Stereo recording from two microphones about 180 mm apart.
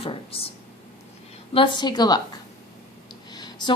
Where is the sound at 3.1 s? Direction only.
25° left (ahead or behind).